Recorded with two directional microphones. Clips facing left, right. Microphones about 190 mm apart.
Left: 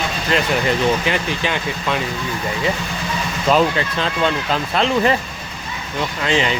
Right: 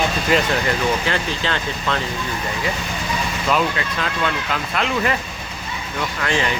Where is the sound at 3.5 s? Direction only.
30° left (ahead or behind).